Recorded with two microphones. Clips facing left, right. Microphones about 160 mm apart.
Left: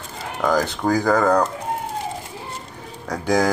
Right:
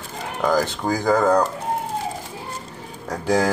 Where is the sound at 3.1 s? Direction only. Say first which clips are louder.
Left 1 dB; 5° right (ahead or behind).